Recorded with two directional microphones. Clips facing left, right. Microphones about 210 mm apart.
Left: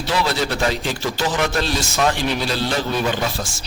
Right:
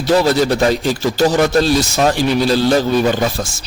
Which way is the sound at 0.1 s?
40° right (ahead or behind).